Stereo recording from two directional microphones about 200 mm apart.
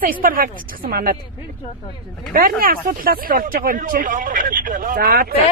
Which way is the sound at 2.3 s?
45° right (ahead or behind).